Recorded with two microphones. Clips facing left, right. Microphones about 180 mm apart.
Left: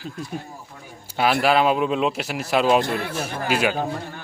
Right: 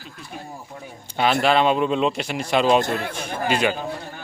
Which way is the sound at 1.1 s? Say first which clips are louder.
Even; 5° left (ahead or behind).